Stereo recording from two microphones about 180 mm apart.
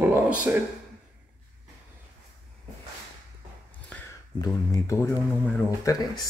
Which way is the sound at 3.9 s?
10° left (ahead or behind).